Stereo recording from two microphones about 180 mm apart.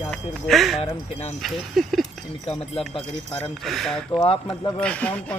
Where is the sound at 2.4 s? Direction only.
35° left (ahead or behind).